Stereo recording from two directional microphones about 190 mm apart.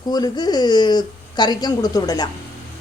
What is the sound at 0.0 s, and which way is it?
A man's voice, 20° left (ahead or behind).